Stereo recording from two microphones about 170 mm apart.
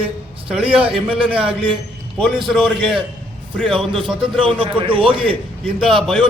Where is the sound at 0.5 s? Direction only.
5° right (ahead or behind).